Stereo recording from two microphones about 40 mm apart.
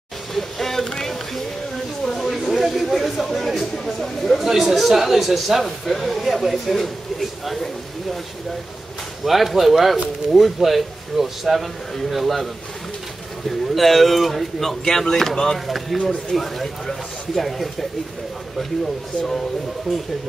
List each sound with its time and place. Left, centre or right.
0.3 s music: centre
2.0 s a sound: centre
4.5 s speech: centre
9.2 s a man's voice: centre
13.5 s a man's voice: centre
15.6 s a man's voice: centre
19.9 s a man's voice: centre